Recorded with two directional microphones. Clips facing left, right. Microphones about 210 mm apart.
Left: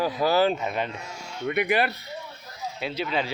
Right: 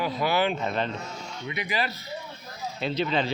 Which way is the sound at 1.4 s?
60° left (ahead or behind).